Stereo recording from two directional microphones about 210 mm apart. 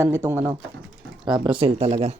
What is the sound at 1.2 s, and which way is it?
Speech, 20° right (ahead or behind).